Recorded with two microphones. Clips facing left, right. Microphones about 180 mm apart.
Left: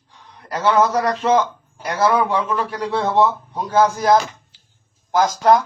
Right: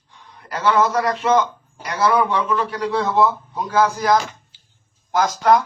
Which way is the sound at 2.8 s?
25° left (ahead or behind).